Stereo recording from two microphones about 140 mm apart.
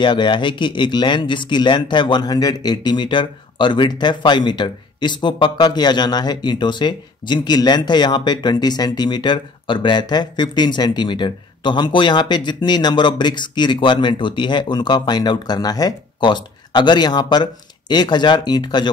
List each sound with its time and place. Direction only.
0.0 s speech: 35° left (ahead or behind)